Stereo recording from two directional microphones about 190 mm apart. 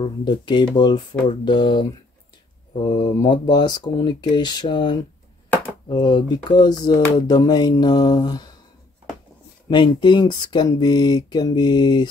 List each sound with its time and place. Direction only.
0.0 s speech: 25° left (ahead or behind)
9.7 s speech: 25° left (ahead or behind)